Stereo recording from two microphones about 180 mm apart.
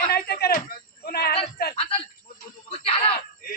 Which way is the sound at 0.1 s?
60° left (ahead or behind).